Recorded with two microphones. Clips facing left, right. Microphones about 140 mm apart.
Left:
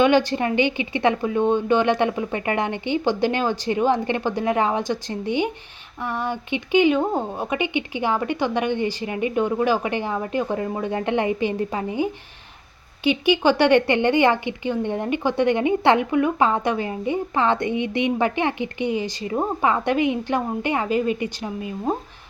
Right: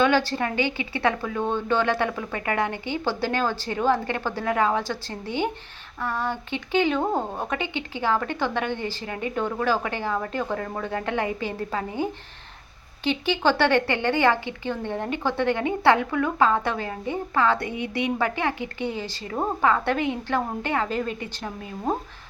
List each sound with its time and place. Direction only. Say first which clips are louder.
0.0 s a woman's voice: left 4 dB; 20° left (ahead or behind)
13.1 s a woman's voice: left 4 dB; 15° left (ahead or behind)